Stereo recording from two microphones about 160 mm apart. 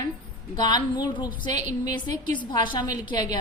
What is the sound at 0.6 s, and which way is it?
A woman's voice, 25° left (ahead or behind).